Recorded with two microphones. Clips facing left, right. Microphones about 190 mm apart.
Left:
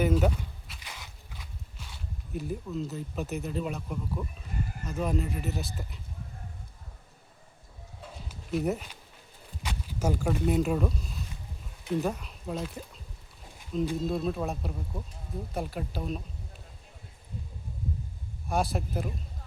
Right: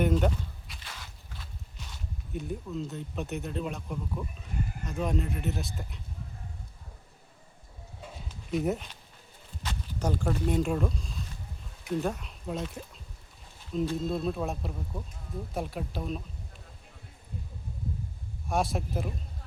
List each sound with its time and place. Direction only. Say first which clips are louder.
0.0 s speech: left 1 dB; 5° left (ahead or behind)
0.8 s walk: left 1 dB; 15° left (ahead or behind)
2.3 s speech: left 1 dB; centre (ahead or behind)
8.3 s speech: even; centre (ahead or behind)
18.4 s speech: even; centre (ahead or behind)